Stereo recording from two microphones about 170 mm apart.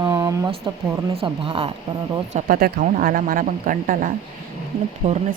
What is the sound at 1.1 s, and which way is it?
Speech, 35° right (ahead or behind).